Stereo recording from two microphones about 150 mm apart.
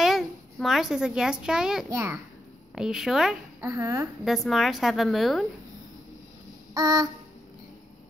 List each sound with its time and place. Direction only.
0.0 s a woman's voice: centre (ahead or behind)
1.9 s a woman's voice: 20° right (ahead or behind)
2.7 s a woman's voice: 5° right (ahead or behind)
3.6 s a woman's voice: 20° right (ahead or behind)
4.2 s a woman's voice: centre (ahead or behind)
6.7 s child singing: 25° right (ahead or behind)